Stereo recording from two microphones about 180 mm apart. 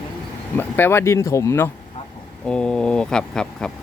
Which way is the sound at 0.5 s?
10° left (ahead or behind).